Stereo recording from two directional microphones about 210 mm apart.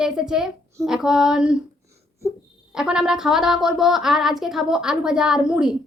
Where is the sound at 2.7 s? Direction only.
5° right (ahead or behind).